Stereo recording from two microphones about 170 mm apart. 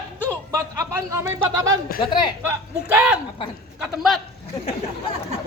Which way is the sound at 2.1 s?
25° left (ahead or behind).